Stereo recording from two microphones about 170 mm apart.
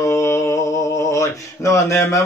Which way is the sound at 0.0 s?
15° left (ahead or behind).